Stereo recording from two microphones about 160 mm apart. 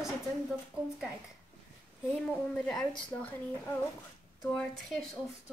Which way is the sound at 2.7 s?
15° left (ahead or behind).